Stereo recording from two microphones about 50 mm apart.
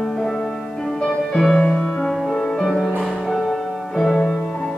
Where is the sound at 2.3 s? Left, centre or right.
Centre.